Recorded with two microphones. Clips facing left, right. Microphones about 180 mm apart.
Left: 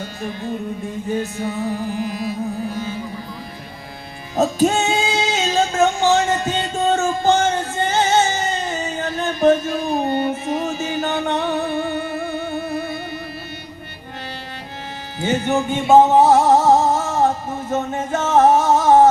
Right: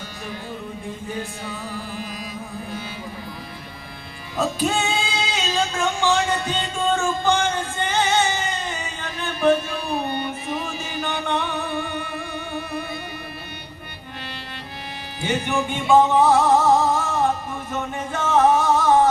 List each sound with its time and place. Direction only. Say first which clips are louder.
4.4 s music: left 6 dB; 45° left (ahead or behind)
15.2 s music: left 4 dB; 40° left (ahead or behind)